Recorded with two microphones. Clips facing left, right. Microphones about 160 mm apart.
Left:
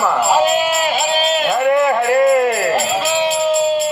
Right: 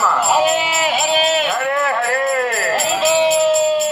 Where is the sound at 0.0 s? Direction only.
20° left (ahead or behind).